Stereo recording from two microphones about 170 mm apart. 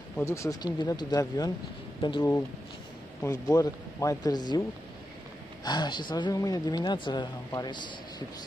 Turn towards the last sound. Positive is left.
turn(degrees=25)  # may be behind; listen again after turning